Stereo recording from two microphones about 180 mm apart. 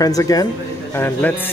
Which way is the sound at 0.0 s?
20° left (ahead or behind).